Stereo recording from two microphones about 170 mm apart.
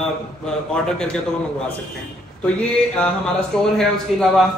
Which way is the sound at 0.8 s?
5° left (ahead or behind).